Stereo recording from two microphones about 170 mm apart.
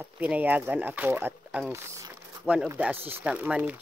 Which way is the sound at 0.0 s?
10° right (ahead or behind).